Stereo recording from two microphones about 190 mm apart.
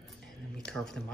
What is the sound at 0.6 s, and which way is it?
Speech, 5° left (ahead or behind).